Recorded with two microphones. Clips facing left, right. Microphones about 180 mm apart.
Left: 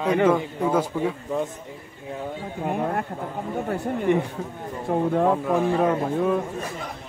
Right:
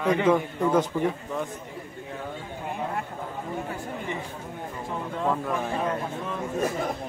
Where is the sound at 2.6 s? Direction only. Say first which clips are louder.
Left 6 dB; 55° left (ahead or behind).